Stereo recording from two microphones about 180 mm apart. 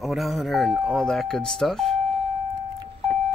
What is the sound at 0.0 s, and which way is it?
Speech, centre (ahead or behind).